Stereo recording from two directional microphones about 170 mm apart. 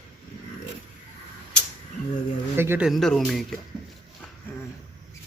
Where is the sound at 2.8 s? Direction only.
Centre (ahead or behind).